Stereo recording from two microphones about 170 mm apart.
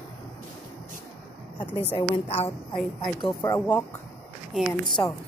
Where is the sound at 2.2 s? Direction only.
35° left (ahead or behind).